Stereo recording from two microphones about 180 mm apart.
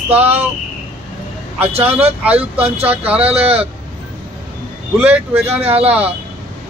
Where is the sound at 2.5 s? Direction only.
35° right (ahead or behind).